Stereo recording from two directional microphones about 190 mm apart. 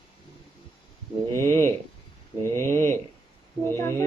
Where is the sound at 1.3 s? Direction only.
15° left (ahead or behind).